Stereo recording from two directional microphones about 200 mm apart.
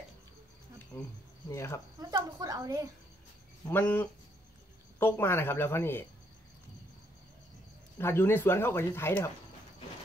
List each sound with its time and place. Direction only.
1.5 s speech: 15° left (ahead or behind)
2.0 s a woman's voice: 20° right (ahead or behind)
3.6 s speech: 10° left (ahead or behind)
8.0 s speech: 10° left (ahead or behind)